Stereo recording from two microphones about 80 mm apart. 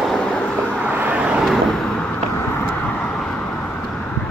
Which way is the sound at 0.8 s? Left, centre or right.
Right.